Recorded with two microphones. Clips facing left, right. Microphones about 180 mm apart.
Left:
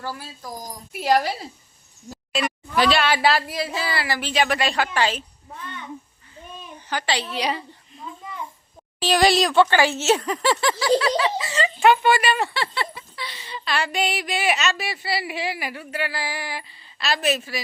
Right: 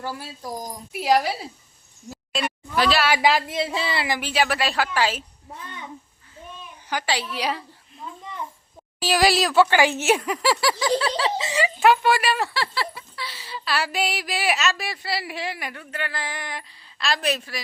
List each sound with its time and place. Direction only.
0.0 s speech: 20° right (ahead or behind)
0.9 s speech: 5° right (ahead or behind)
6.8 s a woman's voice: 10° right (ahead or behind)
7.3 s a sound: 5° right (ahead or behind)
9.0 s speech: 5° right (ahead or behind)
11.0 s speech: 25° right (ahead or behind)
11.5 s speech: 5° right (ahead or behind)